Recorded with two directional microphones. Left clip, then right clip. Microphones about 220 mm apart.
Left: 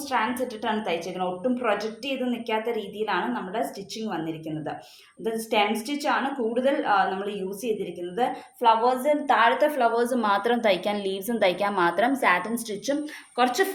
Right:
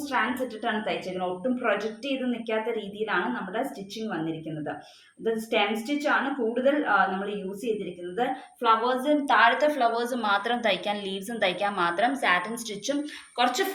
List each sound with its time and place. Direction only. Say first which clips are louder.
0.1 s a woman's voice: left 2 dB; 35° left (ahead or behind)
5.2 s a woman's voice: left 1 dB; 35° left (ahead or behind)
8.1 s a woman's voice: left 1 dB; 35° left (ahead or behind)